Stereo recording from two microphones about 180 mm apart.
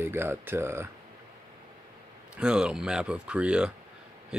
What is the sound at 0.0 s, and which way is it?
Speech, 15° right (ahead or behind).